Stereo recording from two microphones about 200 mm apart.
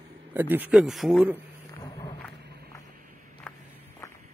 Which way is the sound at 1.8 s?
15° left (ahead or behind).